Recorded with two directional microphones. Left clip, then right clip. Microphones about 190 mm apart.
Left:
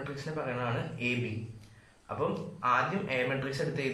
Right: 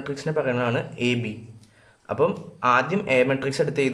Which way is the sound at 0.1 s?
55° right (ahead or behind).